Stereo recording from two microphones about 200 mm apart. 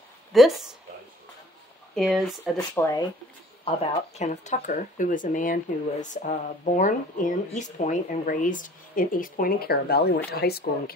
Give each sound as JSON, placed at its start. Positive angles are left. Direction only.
{"t": 0.3, "sound": "speech", "side_deg": 0}
{"t": 2.0, "sound": "speech", "side_deg": 0}
{"t": 2.5, "sound": "speech", "side_deg": 15}
{"t": 4.1, "sound": "speech", "side_deg": 35}